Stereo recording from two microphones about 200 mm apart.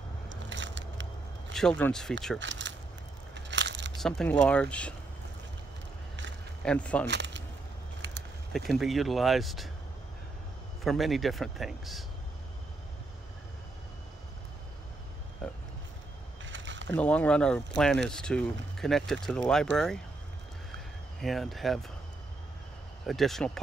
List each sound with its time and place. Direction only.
0.3 s biting: 65° right (ahead or behind)
1.5 s speech: 5° left (ahead or behind)
2.3 s speech: 65° right (ahead or behind)
3.3 s biting: 60° right (ahead or behind)
4.0 s speech: 5° left (ahead or behind)
6.6 s speech: 5° left (ahead or behind)
7.1 s a sound: 60° right (ahead or behind)
8.5 s speech: centre (ahead or behind)
10.8 s speech: centre (ahead or behind)
15.4 s a sound: 5° left (ahead or behind)
16.4 s a sound: 65° right (ahead or behind)
16.9 s speech: 5° left (ahead or behind)
21.2 s speech: centre (ahead or behind)
23.0 s speech: centre (ahead or behind)